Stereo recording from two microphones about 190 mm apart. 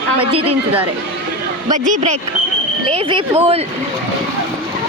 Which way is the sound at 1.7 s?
40° right (ahead or behind).